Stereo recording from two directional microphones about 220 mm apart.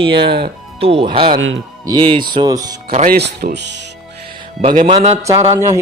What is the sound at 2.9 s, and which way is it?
Speech, 40° right (ahead or behind).